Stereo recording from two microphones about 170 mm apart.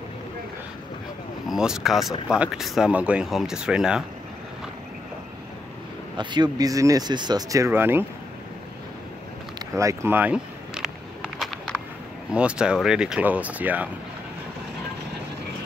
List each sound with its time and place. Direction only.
1.5 s speech: 5° right (ahead or behind)
6.1 s speech: 25° right (ahead or behind)
9.8 s a sound: 15° right (ahead or behind); by 11.8 s centre (ahead or behind)
12.3 s speech: 5° right (ahead or behind)